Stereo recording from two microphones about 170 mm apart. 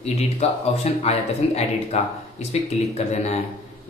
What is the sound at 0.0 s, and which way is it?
Speech, 40° left (ahead or behind).